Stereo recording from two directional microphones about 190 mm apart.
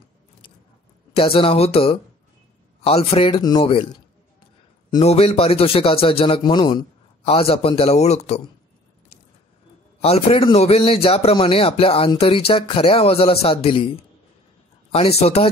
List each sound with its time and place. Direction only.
1.1 s a man's voice: 30° left (ahead or behind)
5.0 s a man's voice: 30° left (ahead or behind)
10.0 s a man's voice: 30° left (ahead or behind)